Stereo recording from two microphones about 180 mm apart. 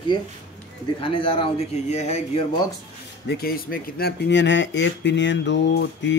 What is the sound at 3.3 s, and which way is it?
Speech, 60° left (ahead or behind).